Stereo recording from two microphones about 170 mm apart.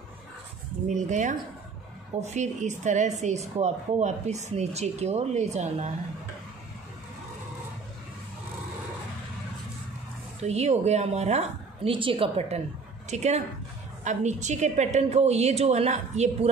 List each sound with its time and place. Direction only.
0.8 s a woman's voice: 45° right (ahead or behind)
10.4 s a woman's voice: 40° right (ahead or behind)